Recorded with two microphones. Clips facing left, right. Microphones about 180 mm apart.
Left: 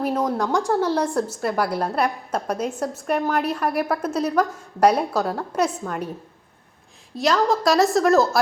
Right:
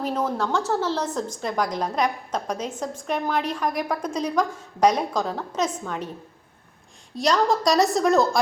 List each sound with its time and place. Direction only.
0.0 s a woman's voice: 10° left (ahead or behind)
7.2 s a woman's voice: centre (ahead or behind)